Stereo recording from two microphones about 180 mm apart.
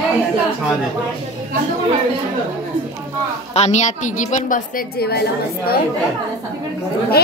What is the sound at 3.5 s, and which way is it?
A woman's voice, 40° left (ahead or behind).